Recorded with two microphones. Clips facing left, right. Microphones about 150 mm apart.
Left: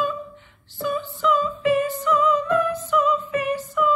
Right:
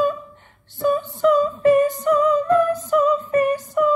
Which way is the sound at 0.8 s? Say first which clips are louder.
Right 6 dB; 45° right (ahead or behind).